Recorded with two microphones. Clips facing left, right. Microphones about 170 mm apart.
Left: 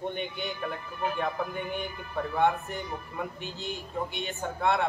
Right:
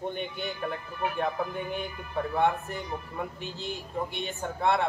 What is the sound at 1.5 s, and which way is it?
A man's voice, centre (ahead or behind).